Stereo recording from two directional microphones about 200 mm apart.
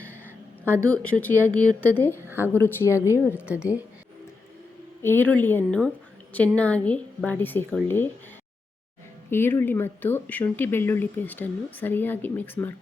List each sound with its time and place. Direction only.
0.0 s a sound: 10° right (ahead or behind)
0.8 s speech: 5° left (ahead or behind)
2.2 s speech: 10° right (ahead or behind)
2.5 s speech: 10° left (ahead or behind)
3.2 s a woman's voice: 5° right (ahead or behind)
5.0 s speech: 10° left (ahead or behind)
9.3 s speech: 10° left (ahead or behind)